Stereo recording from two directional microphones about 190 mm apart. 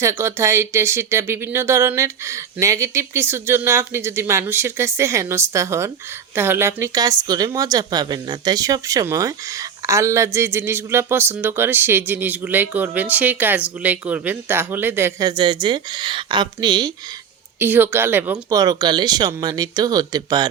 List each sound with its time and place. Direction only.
0.0 s a woman's voice: 15° right (ahead or behind)
15.3 s speech: 25° right (ahead or behind)
17.6 s speech: 10° right (ahead or behind)